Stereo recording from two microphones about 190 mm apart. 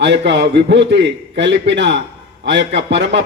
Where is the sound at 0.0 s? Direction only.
65° right (ahead or behind).